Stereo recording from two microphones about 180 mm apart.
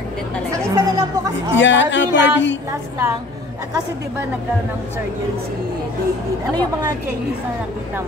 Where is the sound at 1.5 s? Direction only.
90° left.